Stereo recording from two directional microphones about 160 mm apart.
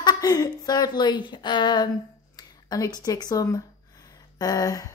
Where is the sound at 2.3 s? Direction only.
25° left (ahead or behind).